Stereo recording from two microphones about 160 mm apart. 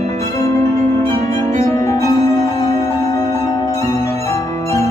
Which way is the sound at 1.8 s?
20° left (ahead or behind).